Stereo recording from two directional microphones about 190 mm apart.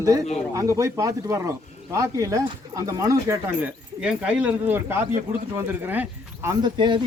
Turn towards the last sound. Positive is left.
turn(degrees=-25)  # may be behind; listen again after turning